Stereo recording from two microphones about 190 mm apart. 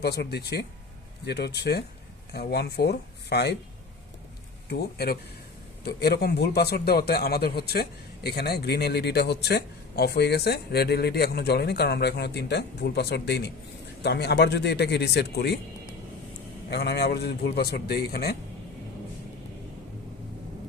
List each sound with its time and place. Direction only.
0.0 s a man's voice: 60° left (ahead or behind)
4.7 s a man's voice: 55° left (ahead or behind)
16.6 s a man's voice: 60° left (ahead or behind)